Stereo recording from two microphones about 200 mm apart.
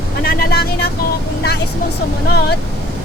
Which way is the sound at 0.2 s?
50° left (ahead or behind).